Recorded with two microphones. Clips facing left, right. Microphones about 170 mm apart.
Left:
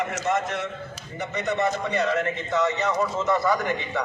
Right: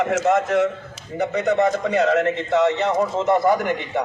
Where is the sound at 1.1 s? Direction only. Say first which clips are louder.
Right 7 dB; 65° right (ahead or behind).